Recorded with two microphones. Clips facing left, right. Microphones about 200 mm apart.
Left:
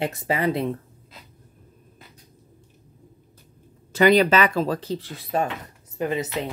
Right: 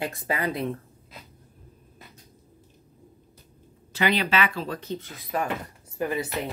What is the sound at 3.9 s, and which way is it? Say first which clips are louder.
Speech: left 8 dB; 45° left (ahead or behind).